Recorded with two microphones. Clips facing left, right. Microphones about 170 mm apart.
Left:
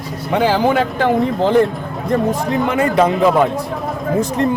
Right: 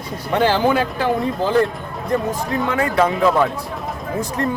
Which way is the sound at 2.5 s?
20° left (ahead or behind).